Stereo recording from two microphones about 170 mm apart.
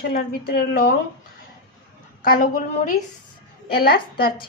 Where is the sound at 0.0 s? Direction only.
65° left (ahead or behind).